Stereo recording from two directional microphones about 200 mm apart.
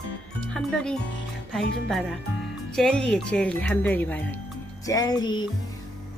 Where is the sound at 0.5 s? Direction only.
5° left (ahead or behind).